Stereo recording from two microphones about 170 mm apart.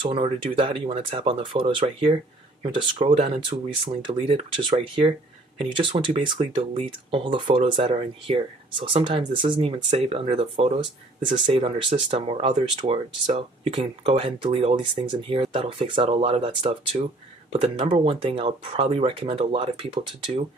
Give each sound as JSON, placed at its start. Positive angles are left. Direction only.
{"t": 0.1, "sound": "speech", "side_deg": -35}